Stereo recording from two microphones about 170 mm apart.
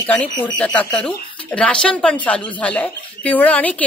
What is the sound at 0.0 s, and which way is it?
Speech, 10° left (ahead or behind).